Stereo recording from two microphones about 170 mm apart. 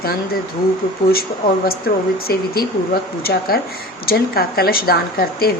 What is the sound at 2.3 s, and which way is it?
Speech, 60° left (ahead or behind).